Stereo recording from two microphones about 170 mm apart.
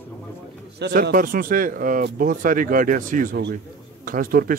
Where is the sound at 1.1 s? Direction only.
55° right (ahead or behind).